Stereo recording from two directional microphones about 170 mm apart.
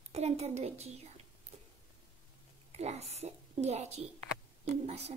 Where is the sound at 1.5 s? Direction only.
35° right (ahead or behind).